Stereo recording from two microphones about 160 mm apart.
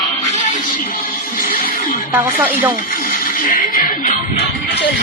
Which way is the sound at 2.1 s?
10° right (ahead or behind).